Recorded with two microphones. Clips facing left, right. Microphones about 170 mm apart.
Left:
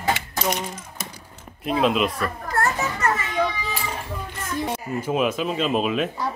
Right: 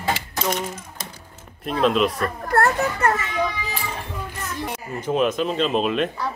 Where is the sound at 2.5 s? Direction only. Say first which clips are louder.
Right 5 dB; 60° right (ahead or behind).